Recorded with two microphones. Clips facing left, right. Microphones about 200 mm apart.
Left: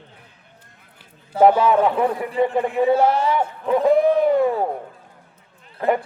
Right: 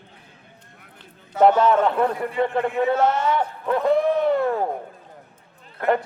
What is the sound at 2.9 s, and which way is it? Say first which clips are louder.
Speech: left 4 dB; 30° left (ahead or behind).